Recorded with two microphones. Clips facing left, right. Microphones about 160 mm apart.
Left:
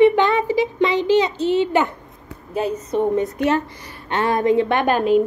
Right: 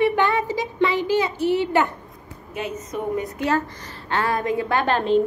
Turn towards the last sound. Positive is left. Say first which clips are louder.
# left 3 dB
turn(degrees=10)  # may be behind; listen again after turning